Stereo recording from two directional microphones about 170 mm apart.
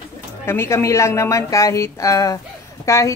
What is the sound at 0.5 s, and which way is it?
A woman's voice, 15° left (ahead or behind).